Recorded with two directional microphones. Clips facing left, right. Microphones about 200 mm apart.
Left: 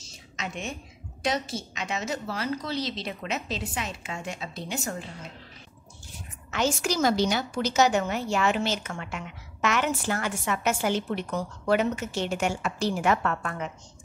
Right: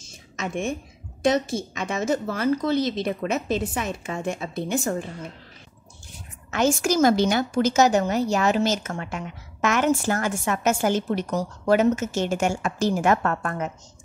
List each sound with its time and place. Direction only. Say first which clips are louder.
0.0 s a sound: right 5 dB; 50° right (ahead or behind)
1.2 s a woman's voice: right 7 dB; 50° right (ahead or behind)
6.5 s a woman's voice: right 5 dB; 45° right (ahead or behind)